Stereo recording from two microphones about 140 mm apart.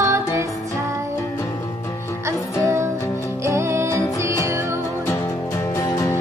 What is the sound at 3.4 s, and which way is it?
Music, 20° right (ahead or behind).